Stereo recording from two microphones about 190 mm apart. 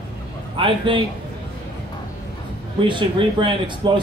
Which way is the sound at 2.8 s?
25° right (ahead or behind).